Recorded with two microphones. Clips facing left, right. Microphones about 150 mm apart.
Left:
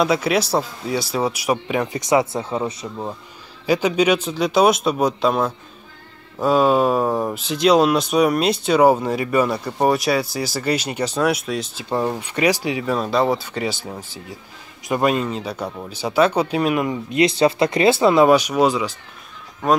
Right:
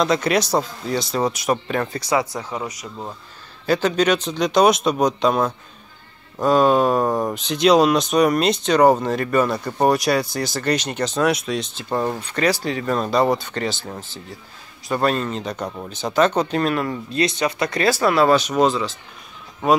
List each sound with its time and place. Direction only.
0.0 s speech: 5° left (ahead or behind); by 2.9 s 30° left (ahead or behind)
3.6 s speech: 10° left (ahead or behind)